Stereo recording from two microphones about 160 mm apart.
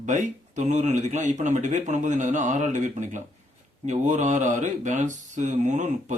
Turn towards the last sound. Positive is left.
turn(degrees=-50)  # may be behind; listen again after turning